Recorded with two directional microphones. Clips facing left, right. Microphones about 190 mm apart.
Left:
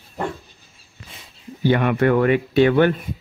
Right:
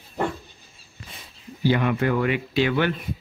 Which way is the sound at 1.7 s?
60° left (ahead or behind).